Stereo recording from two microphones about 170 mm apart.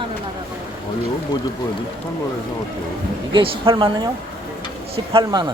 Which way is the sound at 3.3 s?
30° right (ahead or behind).